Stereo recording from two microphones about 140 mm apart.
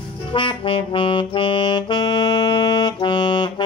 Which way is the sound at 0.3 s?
35° left (ahead or behind).